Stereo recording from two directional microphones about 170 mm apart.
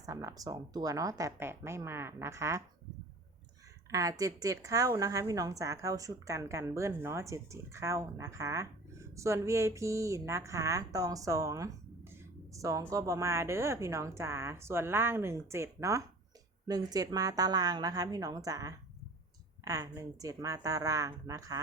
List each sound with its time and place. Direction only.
0.0 s a woman's voice: 20° right (ahead or behind)
3.9 s a woman's voice: 20° right (ahead or behind)